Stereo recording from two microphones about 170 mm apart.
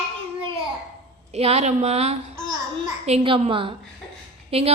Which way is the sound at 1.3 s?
40° right (ahead or behind).